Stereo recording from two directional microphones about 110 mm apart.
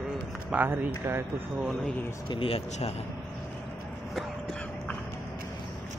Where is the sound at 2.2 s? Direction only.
55° left (ahead or behind).